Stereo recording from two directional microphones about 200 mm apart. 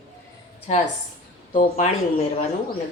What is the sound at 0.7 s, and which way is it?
Speech, 35° left (ahead or behind).